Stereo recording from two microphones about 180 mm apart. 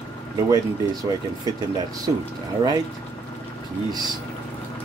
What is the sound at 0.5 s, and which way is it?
Speech, 20° right (ahead or behind).